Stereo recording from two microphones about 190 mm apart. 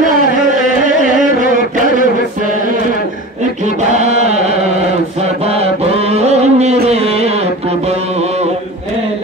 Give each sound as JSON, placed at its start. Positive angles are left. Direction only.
{"t": 3.9, "sound": "chant", "side_deg": -35}
{"t": 5.5, "sound": "music", "side_deg": -30}